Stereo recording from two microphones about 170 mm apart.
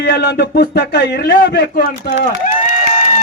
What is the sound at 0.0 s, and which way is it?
Speech, 70° left (ahead or behind).